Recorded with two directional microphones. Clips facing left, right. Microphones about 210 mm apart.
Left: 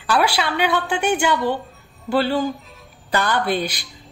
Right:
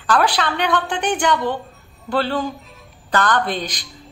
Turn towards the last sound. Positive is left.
turn(degrees=10)  # may be behind; listen again after turning